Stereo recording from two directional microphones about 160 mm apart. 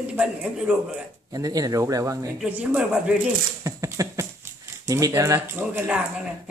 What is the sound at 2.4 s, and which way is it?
Speech, 10° right (ahead or behind).